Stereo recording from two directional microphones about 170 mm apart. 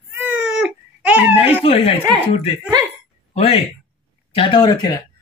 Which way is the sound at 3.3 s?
40° left (ahead or behind).